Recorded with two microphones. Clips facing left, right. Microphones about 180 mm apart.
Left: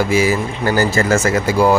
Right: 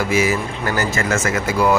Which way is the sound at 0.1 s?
30° left (ahead or behind).